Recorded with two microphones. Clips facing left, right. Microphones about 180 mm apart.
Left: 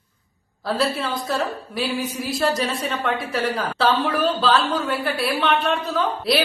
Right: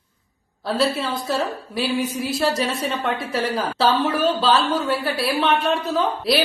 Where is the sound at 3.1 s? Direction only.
30° right (ahead or behind).